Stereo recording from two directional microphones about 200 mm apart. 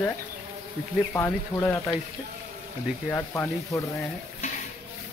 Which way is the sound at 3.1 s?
15° left (ahead or behind).